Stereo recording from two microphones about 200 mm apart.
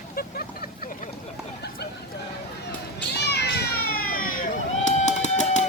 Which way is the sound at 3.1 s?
55° left (ahead or behind).